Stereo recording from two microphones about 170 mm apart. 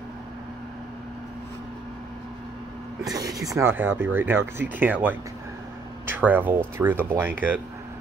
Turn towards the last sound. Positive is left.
turn(degrees=-10)  # may be behind; listen again after turning